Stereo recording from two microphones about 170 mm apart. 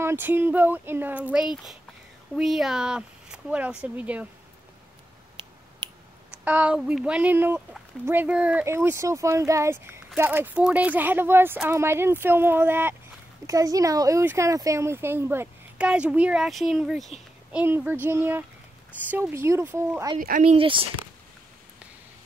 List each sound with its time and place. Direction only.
0.0 s speech: 10° right (ahead or behind)
6.4 s speech: 5° right (ahead or behind)
20.2 s speech: 50° right (ahead or behind)
20.5 s speech: 30° right (ahead or behind)